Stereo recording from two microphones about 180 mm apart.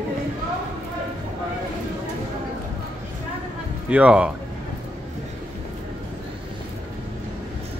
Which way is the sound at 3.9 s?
5° right (ahead or behind).